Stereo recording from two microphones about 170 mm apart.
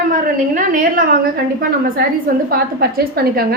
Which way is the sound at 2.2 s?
60° right (ahead or behind).